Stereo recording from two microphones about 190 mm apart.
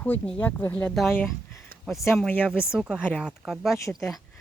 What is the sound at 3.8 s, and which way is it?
Speech, 15° left (ahead or behind).